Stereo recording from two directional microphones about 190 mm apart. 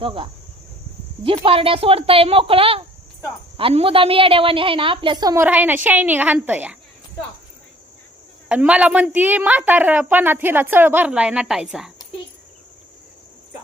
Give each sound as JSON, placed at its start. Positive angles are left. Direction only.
{"t": 0.0, "sound": "a woman's voice", "side_deg": -30}
{"t": 1.5, "sound": "a woman's voice", "side_deg": -30}
{"t": 8.4, "sound": "a woman's voice", "side_deg": -5}